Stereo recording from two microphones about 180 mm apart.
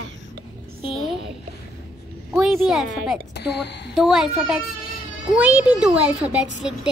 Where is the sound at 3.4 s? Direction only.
75° left (ahead or behind).